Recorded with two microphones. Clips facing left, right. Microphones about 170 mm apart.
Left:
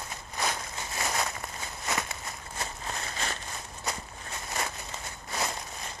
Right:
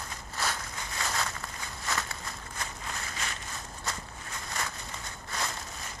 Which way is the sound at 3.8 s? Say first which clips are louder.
Left 3 dB; 20° left (ahead or behind).